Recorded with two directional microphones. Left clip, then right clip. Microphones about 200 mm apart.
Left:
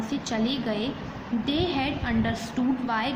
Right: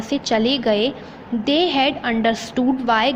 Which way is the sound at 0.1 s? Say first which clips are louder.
Right 12 dB; 35° right (ahead or behind).